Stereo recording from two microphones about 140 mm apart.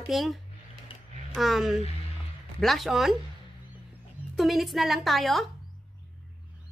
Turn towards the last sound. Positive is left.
turn(degrees=0)  # may be behind; listen again after turning